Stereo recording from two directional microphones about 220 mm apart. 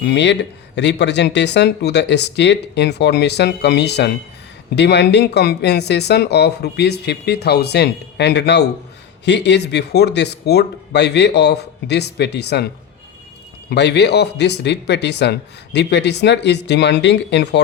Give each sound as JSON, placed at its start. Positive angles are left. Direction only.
{"t": 0.0, "sound": "speech", "side_deg": 50}
{"t": 13.7, "sound": "speech", "side_deg": 50}